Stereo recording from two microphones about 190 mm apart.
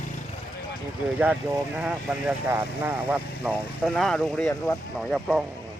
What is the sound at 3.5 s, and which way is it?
Speech, centre (ahead or behind).